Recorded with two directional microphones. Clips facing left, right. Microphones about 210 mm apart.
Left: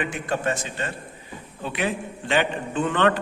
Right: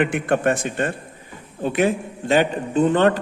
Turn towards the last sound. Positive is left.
turn(degrees=-40)  # may be behind; listen again after turning